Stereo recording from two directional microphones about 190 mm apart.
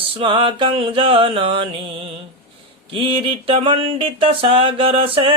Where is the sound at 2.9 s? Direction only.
25° right (ahead or behind).